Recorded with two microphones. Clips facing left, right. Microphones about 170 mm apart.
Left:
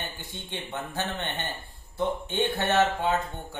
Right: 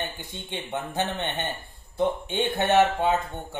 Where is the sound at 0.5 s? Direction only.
15° right (ahead or behind).